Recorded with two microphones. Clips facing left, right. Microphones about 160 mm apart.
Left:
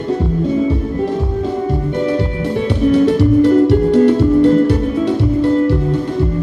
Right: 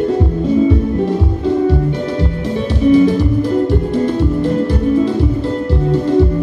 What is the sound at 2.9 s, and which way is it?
Music, 70° left (ahead or behind).